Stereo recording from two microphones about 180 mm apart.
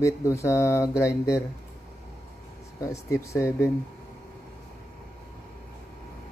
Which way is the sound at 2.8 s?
15° left (ahead or behind).